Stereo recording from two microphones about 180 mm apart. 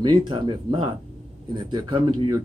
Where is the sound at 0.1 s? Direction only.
25° right (ahead or behind).